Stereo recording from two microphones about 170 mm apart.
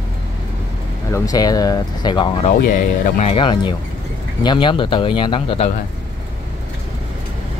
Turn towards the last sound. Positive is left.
turn(degrees=30)  # may be behind; listen again after turning